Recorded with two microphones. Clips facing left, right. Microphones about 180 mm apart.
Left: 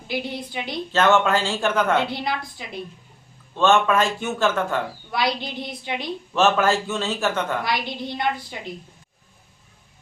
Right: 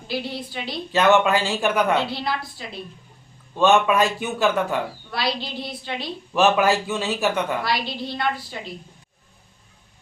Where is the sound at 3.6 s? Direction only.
15° right (ahead or behind).